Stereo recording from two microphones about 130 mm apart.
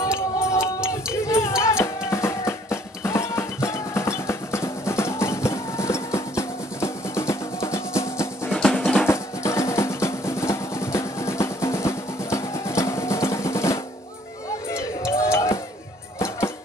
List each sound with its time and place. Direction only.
0.1 s music: 20° left (ahead or behind)
8.5 s drum: centre (ahead or behind)
9.0 s drum: 20° left (ahead or behind)
14.7 s music: 20° left (ahead or behind)